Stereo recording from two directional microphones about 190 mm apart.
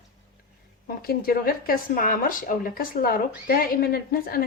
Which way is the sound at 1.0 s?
50° left (ahead or behind).